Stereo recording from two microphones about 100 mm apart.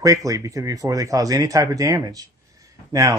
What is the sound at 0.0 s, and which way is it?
Speech, 35° right (ahead or behind).